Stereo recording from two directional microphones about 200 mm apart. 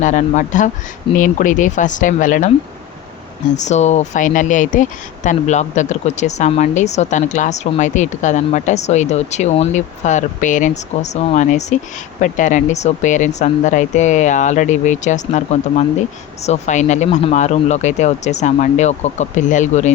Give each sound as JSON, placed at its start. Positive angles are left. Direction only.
{"t": 0.0, "sound": "speech", "side_deg": 40}